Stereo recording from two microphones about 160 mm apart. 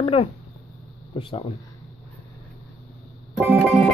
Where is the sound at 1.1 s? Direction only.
35° left (ahead or behind).